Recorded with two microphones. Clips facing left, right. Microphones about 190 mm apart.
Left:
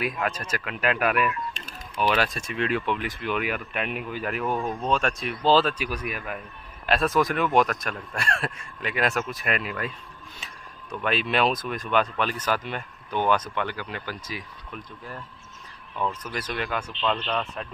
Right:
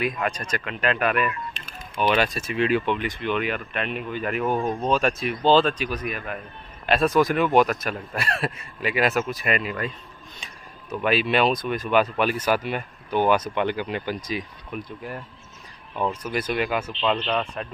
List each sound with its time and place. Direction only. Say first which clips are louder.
0.0 s speech: right 2 dB; 5° left (ahead or behind)
1.6 s speech: left 2 dB; 45° left (ahead or behind)
2.0 s speech: right 2 dB; centre (ahead or behind)